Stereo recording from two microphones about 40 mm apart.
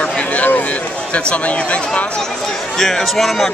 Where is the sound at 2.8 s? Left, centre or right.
Centre.